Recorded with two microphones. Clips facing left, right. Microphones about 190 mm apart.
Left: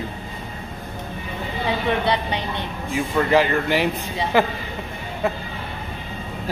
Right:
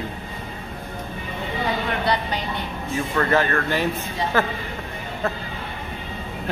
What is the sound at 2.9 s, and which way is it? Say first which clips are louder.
Speech: left 3 dB; 15° left (ahead or behind).